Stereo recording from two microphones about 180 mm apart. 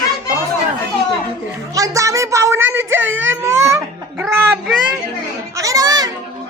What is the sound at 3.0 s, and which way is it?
Whimper, 90° right.